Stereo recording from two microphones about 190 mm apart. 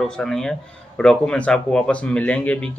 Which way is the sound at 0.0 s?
Centre (ahead or behind).